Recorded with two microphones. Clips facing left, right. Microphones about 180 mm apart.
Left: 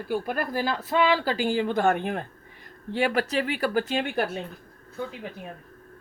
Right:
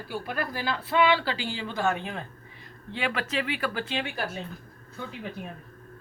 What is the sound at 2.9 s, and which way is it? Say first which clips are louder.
Speech: left 5 dB; 40° left (ahead or behind).